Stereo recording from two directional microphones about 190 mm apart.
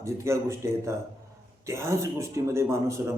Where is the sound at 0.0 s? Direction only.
15° right (ahead or behind).